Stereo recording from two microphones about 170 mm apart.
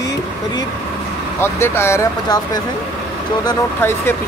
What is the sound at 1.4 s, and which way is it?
Speech, 15° left (ahead or behind).